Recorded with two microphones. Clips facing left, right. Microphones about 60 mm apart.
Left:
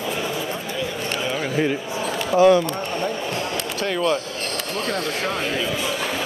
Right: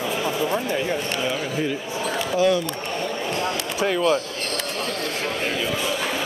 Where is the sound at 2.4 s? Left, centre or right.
Left.